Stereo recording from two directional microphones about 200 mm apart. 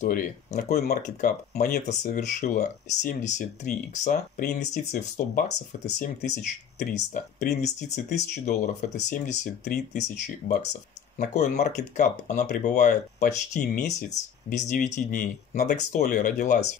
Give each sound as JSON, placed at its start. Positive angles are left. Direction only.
{"t": 0.0, "sound": "speech", "side_deg": 40}
{"t": 1.9, "sound": "speech", "side_deg": 40}